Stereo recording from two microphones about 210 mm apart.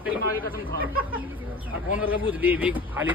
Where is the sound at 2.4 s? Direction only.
5° right (ahead or behind).